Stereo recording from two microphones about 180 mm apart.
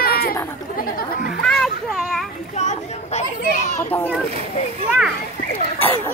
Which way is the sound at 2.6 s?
40° left (ahead or behind).